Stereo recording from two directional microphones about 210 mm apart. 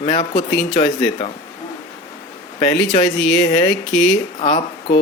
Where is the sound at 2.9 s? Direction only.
20° left (ahead or behind).